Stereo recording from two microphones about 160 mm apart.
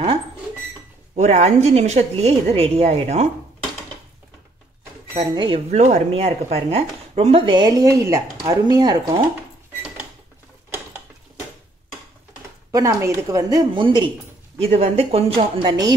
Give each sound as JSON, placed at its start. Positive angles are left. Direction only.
{"t": 1.1, "sound": "a woman's voice", "side_deg": -45}
{"t": 5.3, "sound": "speech", "side_deg": -30}
{"t": 5.7, "sound": "speech", "side_deg": -45}
{"t": 12.7, "sound": "speech", "side_deg": -20}
{"t": 14.6, "sound": "speech", "side_deg": -40}